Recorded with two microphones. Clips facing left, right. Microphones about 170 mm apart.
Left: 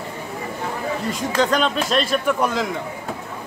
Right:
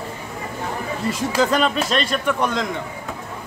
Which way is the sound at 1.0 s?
5° right (ahead or behind).